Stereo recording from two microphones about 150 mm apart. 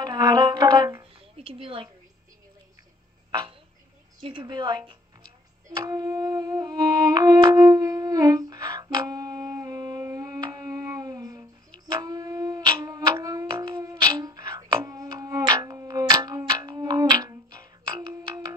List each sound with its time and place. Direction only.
0.0 s music: 25° right (ahead or behind)
1.3 s a woman's voice: 40° right (ahead or behind)
3.3 s a woman's voice: 30° right (ahead or behind)
5.7 s music: 25° right (ahead or behind)
12.0 s a sound: 25° right (ahead or behind)